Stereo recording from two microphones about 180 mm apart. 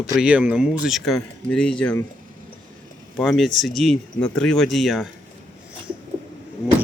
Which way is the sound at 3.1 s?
Centre (ahead or behind).